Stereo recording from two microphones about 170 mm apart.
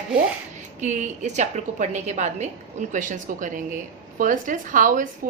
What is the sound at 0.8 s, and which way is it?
A woman's voice, 45° right (ahead or behind).